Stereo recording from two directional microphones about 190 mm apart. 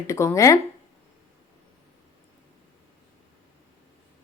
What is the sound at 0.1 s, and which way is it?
Speech, 15° left (ahead or behind).